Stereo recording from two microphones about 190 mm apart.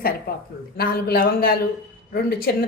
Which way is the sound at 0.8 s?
55° left (ahead or behind).